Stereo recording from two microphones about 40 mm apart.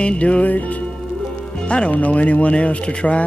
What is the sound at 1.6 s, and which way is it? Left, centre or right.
Speech, left.